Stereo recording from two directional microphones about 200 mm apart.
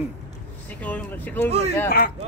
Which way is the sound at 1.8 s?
45° left (ahead or behind).